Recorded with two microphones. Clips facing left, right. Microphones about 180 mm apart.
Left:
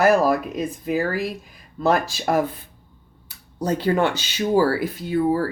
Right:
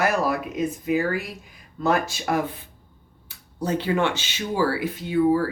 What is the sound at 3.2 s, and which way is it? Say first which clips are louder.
Speech: left 3 dB; 40° left (ahead or behind).